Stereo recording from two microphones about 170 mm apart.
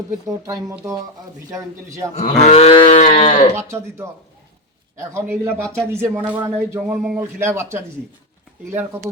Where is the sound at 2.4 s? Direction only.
35° left (ahead or behind).